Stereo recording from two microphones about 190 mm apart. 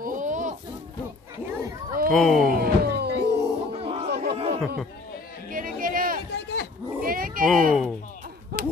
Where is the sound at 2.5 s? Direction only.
55° right (ahead or behind).